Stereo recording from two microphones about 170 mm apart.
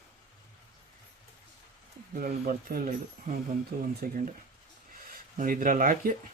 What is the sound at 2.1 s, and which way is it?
Speech, 55° right (ahead or behind).